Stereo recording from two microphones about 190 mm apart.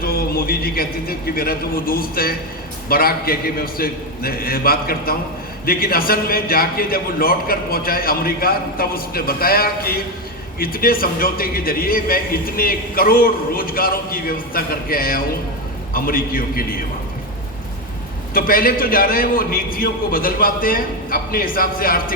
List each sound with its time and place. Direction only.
0.0 s a man's voice: 50° left (ahead or behind)
18.3 s a man's voice: 50° left (ahead or behind)